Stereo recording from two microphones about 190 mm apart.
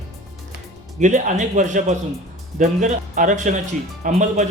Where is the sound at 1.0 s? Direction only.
40° right (ahead or behind).